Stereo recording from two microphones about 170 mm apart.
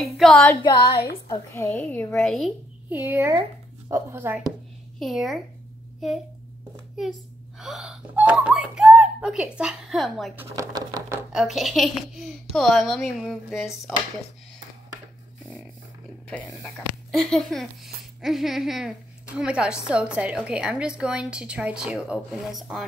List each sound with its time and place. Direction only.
0.0 s a sound: centre (ahead or behind)
1.3 s a woman's voice: 15° left (ahead or behind)
2.2 s speech: centre (ahead or behind)
2.9 s a child's voice: 10° right (ahead or behind)
4.9 s a child's voice: centre (ahead or behind)
10.5 s speech: 20° right (ahead or behind)
11.3 s speech: centre (ahead or behind)
16.3 s speech: 5° left (ahead or behind)